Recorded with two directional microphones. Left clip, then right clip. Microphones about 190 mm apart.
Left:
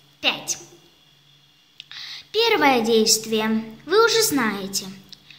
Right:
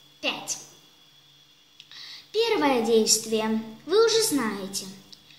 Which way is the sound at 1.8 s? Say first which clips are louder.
Left 7 dB; 20° left (ahead or behind).